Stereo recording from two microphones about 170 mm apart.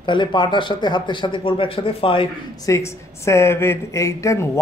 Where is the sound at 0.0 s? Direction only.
25° left (ahead or behind).